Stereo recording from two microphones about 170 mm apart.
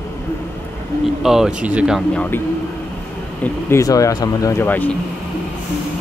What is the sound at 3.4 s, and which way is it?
Speech, 15° left (ahead or behind).